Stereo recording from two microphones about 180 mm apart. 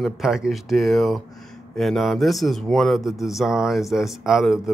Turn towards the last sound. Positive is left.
turn(degrees=0)  # may be behind; listen again after turning